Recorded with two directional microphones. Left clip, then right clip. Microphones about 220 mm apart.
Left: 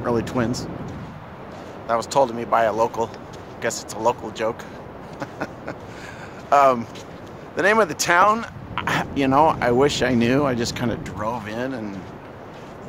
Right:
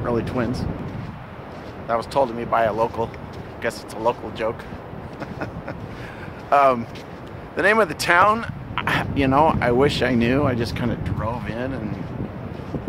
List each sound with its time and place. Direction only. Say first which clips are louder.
0.0 s speech: left 1 dB; 25° left (ahead or behind)
1.9 s speech: left 1 dB; 20° left (ahead or behind)
6.5 s speech: left 1 dB; 15° left (ahead or behind)